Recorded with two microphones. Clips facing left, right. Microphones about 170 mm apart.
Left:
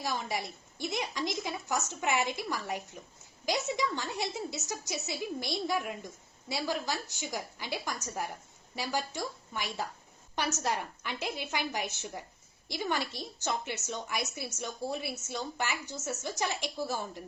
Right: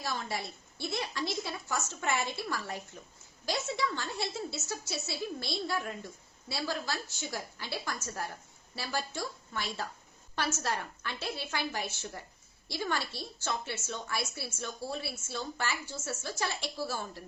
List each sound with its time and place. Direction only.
0.0 s a woman's voice: 15° left (ahead or behind)